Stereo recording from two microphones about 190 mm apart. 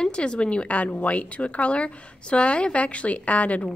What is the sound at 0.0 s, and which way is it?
A woman's voice, 5° left (ahead or behind).